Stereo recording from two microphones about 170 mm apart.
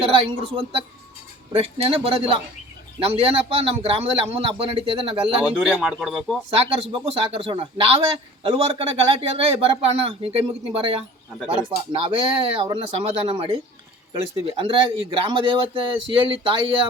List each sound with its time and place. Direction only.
0.0 s speech: 35° right (ahead or behind)
5.5 s speech: 5° right (ahead or behind)
6.5 s speech: 35° right (ahead or behind)